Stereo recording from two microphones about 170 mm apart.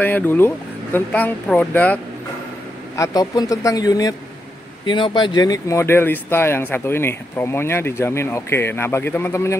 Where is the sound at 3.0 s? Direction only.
20° left (ahead or behind).